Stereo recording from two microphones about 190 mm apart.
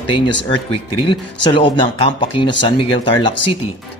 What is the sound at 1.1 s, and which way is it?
A man's voice, 25° left (ahead or behind).